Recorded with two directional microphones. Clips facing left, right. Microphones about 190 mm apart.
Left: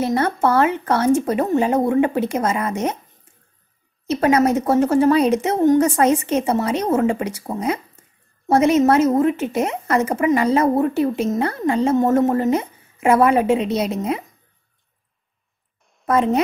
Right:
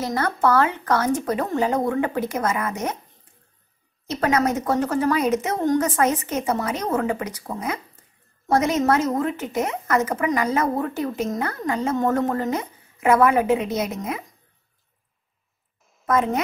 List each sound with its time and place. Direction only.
0.0 s a woman's voice: 25° left (ahead or behind)
4.1 s a woman's voice: 25° left (ahead or behind)
16.1 s a woman's voice: 30° left (ahead or behind)